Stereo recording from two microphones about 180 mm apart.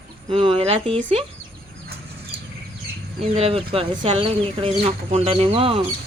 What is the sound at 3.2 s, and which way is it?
Speech, 35° right (ahead or behind).